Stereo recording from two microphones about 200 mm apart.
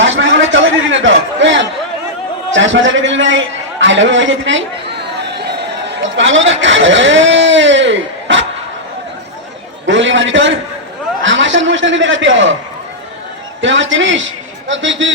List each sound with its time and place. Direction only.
0.0 s a sound: 70° right (ahead or behind)
2.5 s a man's voice: 70° right (ahead or behind)
5.2 s chatter: 55° right (ahead or behind)
9.8 s a man's voice: 70° right (ahead or behind)
13.6 s a man's voice: 70° right (ahead or behind)